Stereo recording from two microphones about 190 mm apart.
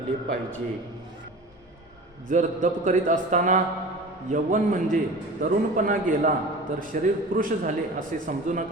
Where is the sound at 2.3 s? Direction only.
40° right (ahead or behind).